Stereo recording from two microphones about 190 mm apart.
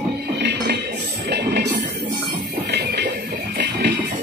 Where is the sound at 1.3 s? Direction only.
60° right (ahead or behind).